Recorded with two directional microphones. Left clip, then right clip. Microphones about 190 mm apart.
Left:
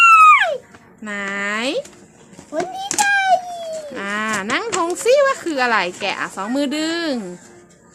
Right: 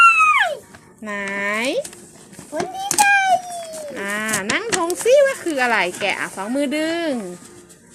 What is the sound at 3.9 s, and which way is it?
Livestock, 5° left (ahead or behind).